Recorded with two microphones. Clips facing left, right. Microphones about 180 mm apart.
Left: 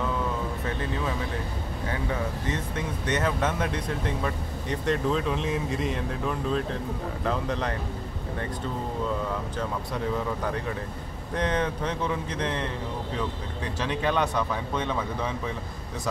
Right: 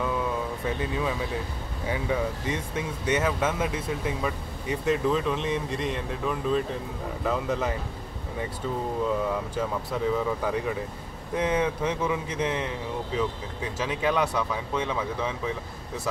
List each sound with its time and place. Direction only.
2.4 s speech: 10° right (ahead or behind)
9.6 s speech: 5° right (ahead or behind)
13.7 s speech: 5° right (ahead or behind)